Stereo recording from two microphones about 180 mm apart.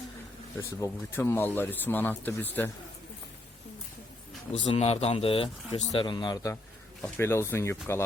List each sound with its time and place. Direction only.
0.8 s speech: 10° left (ahead or behind)
4.6 s speech: 30° left (ahead or behind); by 8.0 s 15° left (ahead or behind)